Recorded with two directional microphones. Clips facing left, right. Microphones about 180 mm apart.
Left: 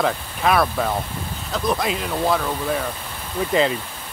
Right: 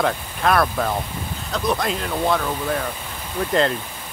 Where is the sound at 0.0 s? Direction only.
Centre (ahead or behind).